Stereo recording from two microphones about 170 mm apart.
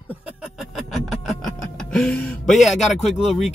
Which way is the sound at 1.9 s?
5° left (ahead or behind).